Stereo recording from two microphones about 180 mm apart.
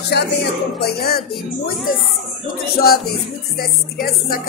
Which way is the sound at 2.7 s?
60° left (ahead or behind).